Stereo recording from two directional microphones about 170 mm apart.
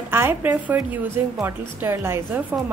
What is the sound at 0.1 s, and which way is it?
A woman's voice, 15° right (ahead or behind).